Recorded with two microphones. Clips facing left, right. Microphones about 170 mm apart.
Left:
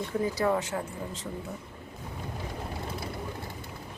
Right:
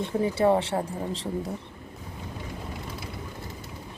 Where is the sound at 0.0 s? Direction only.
25° right (ahead or behind).